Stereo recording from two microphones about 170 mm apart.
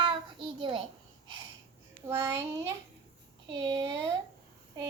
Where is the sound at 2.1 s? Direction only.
15° right (ahead or behind).